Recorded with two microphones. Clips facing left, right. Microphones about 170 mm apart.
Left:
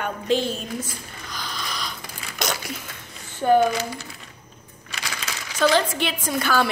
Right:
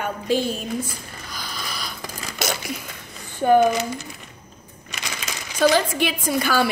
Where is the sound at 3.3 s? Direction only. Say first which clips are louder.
Right 2 dB; 15° right (ahead or behind).